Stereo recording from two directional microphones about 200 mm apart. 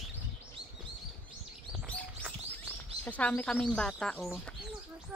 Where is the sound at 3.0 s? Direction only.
10° left (ahead or behind).